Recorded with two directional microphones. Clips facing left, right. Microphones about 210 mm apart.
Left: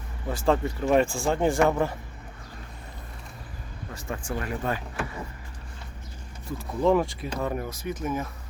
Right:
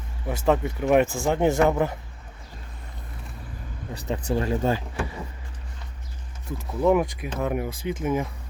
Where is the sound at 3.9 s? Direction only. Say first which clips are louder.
Right 6 dB; 20° right (ahead or behind).